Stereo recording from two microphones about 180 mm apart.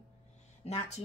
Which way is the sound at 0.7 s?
35° left (ahead or behind).